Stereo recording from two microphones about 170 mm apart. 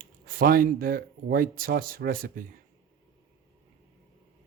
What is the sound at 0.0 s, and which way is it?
Speech, 55° right (ahead or behind).